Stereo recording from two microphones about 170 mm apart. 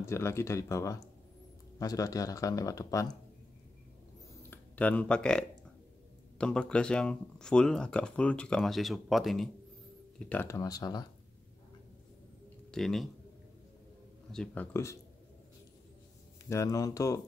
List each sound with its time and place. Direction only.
0.0 s speech: 15° left (ahead or behind)
4.4 s a sound: 10° left (ahead or behind)
6.3 s speech: 5° left (ahead or behind); by 11.1 s 20° left (ahead or behind)
12.7 s speech: centre (ahead or behind)
14.3 s speech: 5° left (ahead or behind)
16.4 s speech: 20° left (ahead or behind)